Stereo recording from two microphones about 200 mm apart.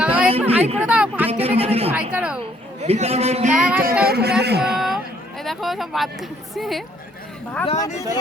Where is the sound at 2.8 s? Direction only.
30° right (ahead or behind).